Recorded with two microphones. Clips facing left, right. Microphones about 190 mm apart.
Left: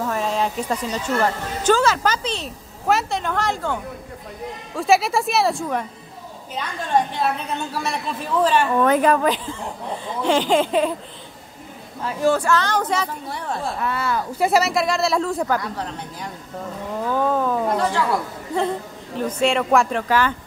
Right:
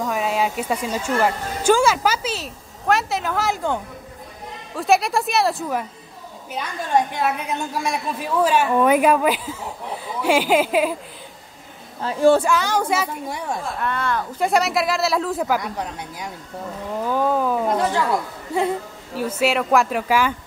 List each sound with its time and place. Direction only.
0.1 s a woman's voice: 10° right (ahead or behind)
4.7 s a woman's voice: centre (ahead or behind)
12.0 s a woman's voice: 30° right (ahead or behind)
12.4 s a woman's voice: 10° right (ahead or behind)
13.7 s a woman's voice: 5° left (ahead or behind); by 16.3 s 15° right (ahead or behind)
17.0 s a sound: 10° right (ahead or behind)
18.5 s a woman's voice: 10° right (ahead or behind)